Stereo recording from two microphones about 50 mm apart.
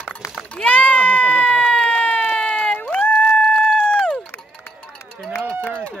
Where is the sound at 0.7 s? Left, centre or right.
Left.